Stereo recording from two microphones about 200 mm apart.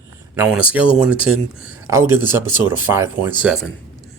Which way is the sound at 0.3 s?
5° right (ahead or behind).